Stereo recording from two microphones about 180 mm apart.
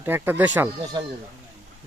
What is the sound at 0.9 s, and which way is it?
Speech, 20° right (ahead or behind).